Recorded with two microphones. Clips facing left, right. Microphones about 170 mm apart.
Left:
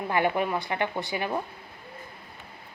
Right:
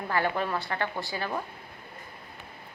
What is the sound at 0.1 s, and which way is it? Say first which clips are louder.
A woman's voice: left 3 dB; 15° left (ahead or behind).